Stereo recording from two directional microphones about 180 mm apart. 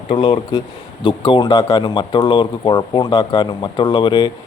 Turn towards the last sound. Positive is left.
turn(degrees=25)  # may be behind; listen again after turning